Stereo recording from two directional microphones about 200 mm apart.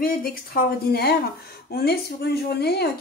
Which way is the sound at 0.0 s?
45° left (ahead or behind).